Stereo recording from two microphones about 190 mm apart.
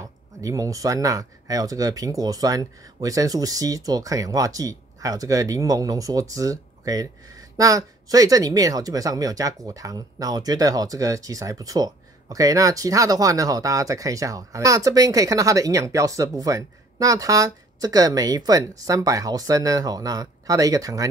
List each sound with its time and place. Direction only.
0.0 s speech: 15° right (ahead or behind)